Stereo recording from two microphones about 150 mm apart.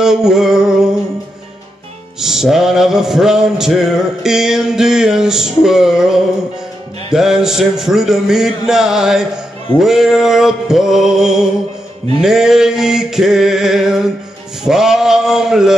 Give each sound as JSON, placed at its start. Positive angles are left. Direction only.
{"t": 0.0, "sound": "music", "side_deg": -5}
{"t": 2.1, "sound": "music", "side_deg": 0}